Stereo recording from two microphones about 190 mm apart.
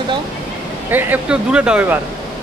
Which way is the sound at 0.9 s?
5° right (ahead or behind).